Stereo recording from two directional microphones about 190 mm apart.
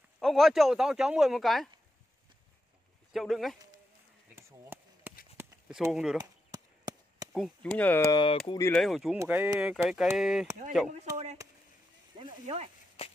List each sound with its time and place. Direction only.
0.2 s speech: centre (ahead or behind)
3.1 s speech: centre (ahead or behind)
4.4 s chop: 10° right (ahead or behind)
5.4 s a sound: 5° right (ahead or behind)
6.1 s chop: 20° right (ahead or behind)
7.3 s speech: centre (ahead or behind)
8.1 s speech: 25° left (ahead or behind)
8.7 s speech: centre (ahead or behind)
12.2 s speech: 25° right (ahead or behind)